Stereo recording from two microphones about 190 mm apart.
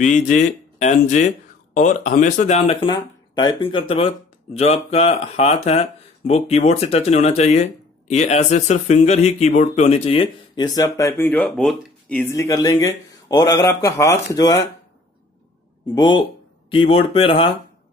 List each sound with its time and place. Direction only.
0.0 s speech: 40° left (ahead or behind); by 14.6 s 20° left (ahead or behind)
15.9 s speech: 25° left (ahead or behind)